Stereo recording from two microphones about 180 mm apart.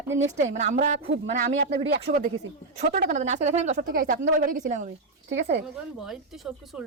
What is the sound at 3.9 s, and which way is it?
Speech, 50° right (ahead or behind).